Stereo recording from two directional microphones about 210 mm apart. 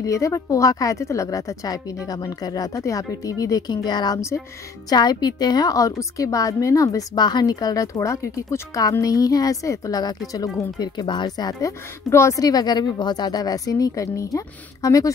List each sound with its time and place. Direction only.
0.0 s a woman's voice: 15° left (ahead or behind)